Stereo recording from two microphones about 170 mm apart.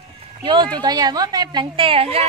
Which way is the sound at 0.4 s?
25° right (ahead or behind).